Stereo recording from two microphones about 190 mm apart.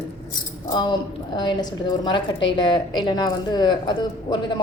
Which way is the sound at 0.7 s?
25° left (ahead or behind).